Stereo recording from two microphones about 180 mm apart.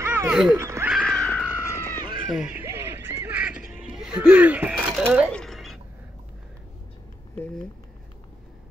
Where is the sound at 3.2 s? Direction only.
10° right (ahead or behind).